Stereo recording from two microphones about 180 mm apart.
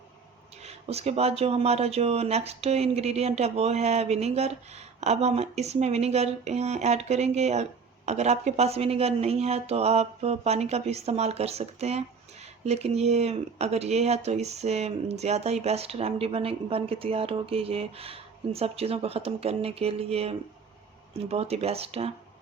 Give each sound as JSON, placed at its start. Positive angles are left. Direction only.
{"t": 0.6, "sound": "speech", "side_deg": -35}